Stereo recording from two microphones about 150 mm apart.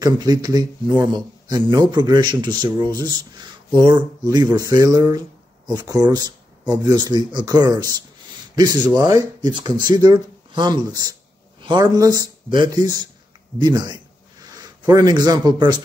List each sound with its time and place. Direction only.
0.0 s speech: 25° right (ahead or behind)